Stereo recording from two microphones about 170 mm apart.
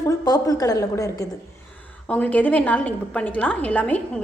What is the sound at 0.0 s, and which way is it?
A woman's voice, 20° left (ahead or behind).